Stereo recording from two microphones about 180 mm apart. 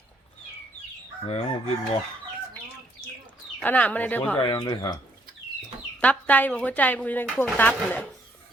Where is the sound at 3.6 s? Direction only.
10° left (ahead or behind).